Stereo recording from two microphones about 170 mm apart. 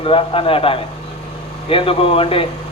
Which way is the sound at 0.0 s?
35° left (ahead or behind).